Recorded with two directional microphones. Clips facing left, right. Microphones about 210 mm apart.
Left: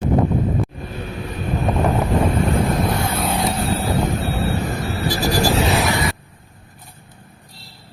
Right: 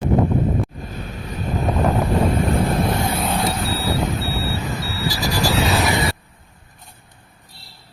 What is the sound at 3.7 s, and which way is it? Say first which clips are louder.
Vehicle: left 2 dB; 45° left (ahead or behind).